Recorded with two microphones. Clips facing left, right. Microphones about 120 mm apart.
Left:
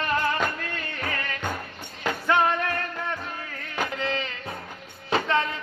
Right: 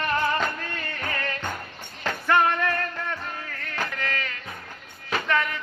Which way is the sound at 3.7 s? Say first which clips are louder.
Left 3 dB; 15° left (ahead or behind).